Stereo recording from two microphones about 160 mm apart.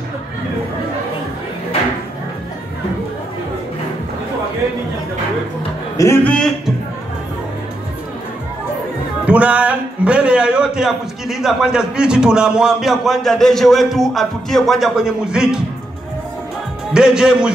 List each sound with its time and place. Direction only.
5.9 s a man's voice: 15° left (ahead or behind)
6.3 s a man's voice: 5° left (ahead or behind)
9.2 s a man's voice: 10° right (ahead or behind)
16.9 s a man's voice: 5° right (ahead or behind)